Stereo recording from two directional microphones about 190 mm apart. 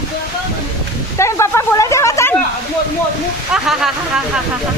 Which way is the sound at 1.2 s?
15° left (ahead or behind).